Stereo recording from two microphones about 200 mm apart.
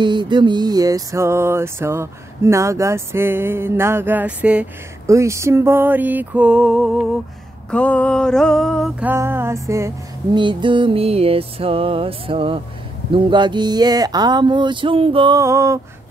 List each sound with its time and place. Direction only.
0.0 s music: 25° right (ahead or behind); by 7.1 s centre (ahead or behind)
7.7 s a sound: 5° left (ahead or behind)
9.0 s music: 10° right (ahead or behind)